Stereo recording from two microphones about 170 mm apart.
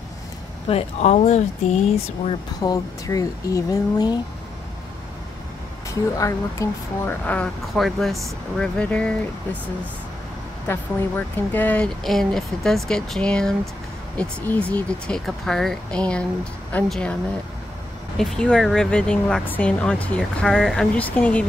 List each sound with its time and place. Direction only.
0.7 s speech: 40° left (ahead or behind)
2.6 s speech: 20° left (ahead or behind)
6.1 s speech: 20° left (ahead or behind)
10.7 s speech: 10° left (ahead or behind)